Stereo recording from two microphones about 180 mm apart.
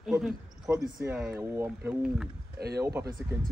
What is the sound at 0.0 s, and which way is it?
Cricket, 5° right (ahead or behind).